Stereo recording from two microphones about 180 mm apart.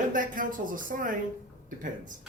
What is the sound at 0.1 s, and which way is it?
Speech, 50° right (ahead or behind).